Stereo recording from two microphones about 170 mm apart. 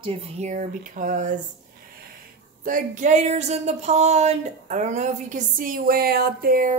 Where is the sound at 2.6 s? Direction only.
50° right (ahead or behind).